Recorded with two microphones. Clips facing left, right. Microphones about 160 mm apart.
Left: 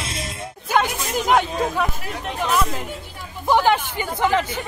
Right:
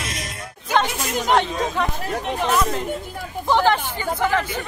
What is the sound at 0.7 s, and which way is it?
Snake, 10° left (ahead or behind).